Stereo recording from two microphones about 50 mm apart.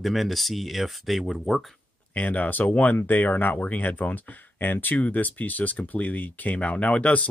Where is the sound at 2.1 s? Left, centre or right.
Left.